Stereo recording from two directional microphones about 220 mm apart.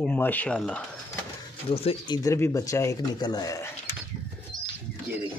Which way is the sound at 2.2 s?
15° left (ahead or behind).